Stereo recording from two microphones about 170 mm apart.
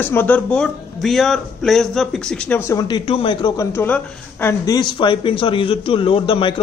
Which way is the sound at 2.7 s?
20° left (ahead or behind).